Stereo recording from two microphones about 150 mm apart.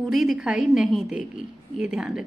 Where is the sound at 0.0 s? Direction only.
Centre (ahead or behind).